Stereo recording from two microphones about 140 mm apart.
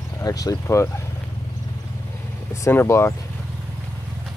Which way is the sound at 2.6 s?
20° left (ahead or behind).